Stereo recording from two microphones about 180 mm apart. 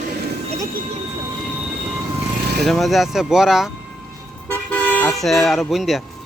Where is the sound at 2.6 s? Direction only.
Centre (ahead or behind).